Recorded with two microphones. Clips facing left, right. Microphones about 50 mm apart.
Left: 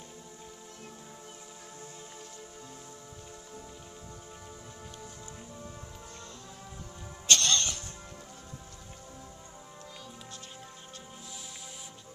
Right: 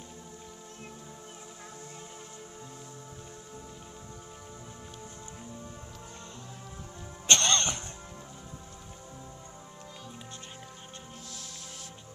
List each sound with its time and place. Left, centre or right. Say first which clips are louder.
7.2 s music: right 1 dB; right